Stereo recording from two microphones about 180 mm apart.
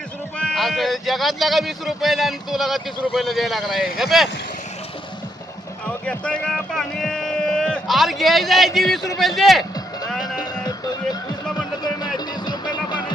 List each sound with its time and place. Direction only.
0.3 s a man's voice: centre (ahead or behind)
5.8 s a man's voice: 5° left (ahead or behind)
10.1 s music: centre (ahead or behind)
10.4 s music: 20° left (ahead or behind)